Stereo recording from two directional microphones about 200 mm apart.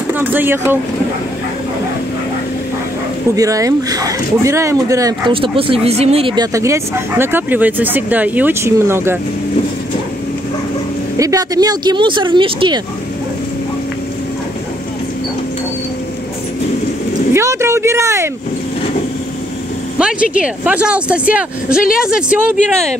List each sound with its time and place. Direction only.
0.1 s speech: 10° right (ahead or behind)
3.3 s speech: 15° right (ahead or behind)
11.1 s speech: 15° right (ahead or behind)
17.3 s a sound: 15° right (ahead or behind)
20.0 s speech: 5° right (ahead or behind)